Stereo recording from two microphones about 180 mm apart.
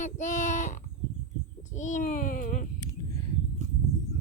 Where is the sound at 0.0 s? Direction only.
45° left (ahead or behind).